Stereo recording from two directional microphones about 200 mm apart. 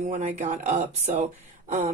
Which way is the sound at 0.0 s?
35° right (ahead or behind).